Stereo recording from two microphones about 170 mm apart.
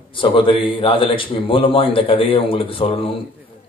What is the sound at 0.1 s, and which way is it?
A man's voice, 30° left (ahead or behind).